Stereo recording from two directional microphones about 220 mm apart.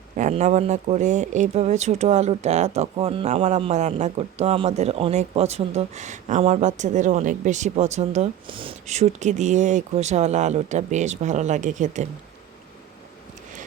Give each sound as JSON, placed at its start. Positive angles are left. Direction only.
{"t": 0.2, "sound": "speech", "side_deg": -30}